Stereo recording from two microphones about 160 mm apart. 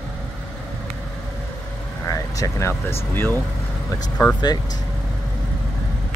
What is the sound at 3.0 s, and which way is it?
Speech, 15° left (ahead or behind).